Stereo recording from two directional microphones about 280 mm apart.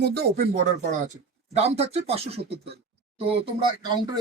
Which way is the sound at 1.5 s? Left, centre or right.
Right.